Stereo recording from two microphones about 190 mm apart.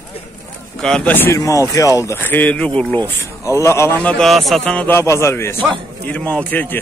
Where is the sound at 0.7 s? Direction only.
5° left (ahead or behind).